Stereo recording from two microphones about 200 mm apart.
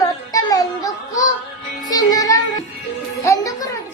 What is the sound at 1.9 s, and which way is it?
Music, 20° left (ahead or behind).